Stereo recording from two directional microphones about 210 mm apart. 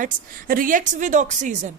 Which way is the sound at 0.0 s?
40° right (ahead or behind).